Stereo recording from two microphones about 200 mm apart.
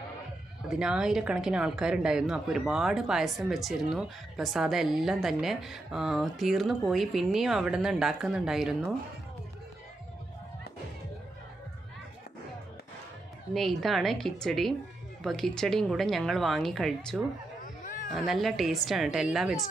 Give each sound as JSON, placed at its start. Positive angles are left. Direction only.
{"t": 0.7, "sound": "a woman's voice", "side_deg": -5}
{"t": 13.5, "sound": "a woman's voice", "side_deg": 0}